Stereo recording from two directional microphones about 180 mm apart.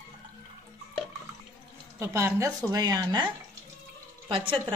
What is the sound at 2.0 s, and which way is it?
A woman's voice, 15° right (ahead or behind).